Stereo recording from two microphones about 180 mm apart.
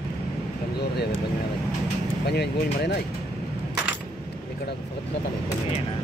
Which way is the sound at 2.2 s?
65° left (ahead or behind).